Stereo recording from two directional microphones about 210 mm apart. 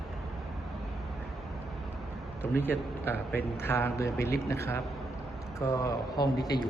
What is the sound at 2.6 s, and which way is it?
A man's voice, 10° left (ahead or behind).